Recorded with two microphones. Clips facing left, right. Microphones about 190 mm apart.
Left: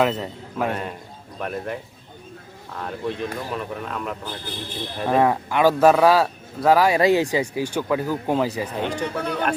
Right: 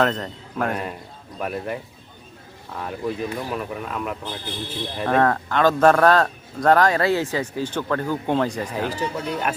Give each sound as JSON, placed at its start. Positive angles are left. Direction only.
{"t": 0.0, "sound": "speech", "side_deg": 5}
{"t": 5.0, "sound": "speech", "side_deg": 10}
{"t": 8.7, "sound": "speech", "side_deg": -5}
{"t": 9.0, "sound": "speech", "side_deg": 60}